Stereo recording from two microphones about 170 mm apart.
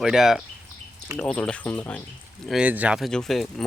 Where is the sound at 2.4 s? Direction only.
5° right (ahead or behind).